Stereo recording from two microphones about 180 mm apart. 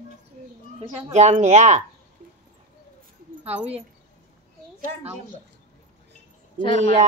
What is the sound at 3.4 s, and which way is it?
Speech, 10° right (ahead or behind).